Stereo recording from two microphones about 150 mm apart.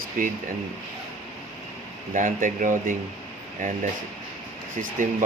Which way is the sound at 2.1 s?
60° right (ahead or behind).